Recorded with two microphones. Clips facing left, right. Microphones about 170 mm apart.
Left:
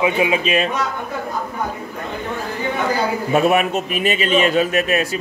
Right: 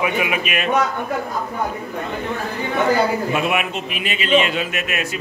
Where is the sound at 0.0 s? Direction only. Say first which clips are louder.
Left 4 dB; 25° left (ahead or behind).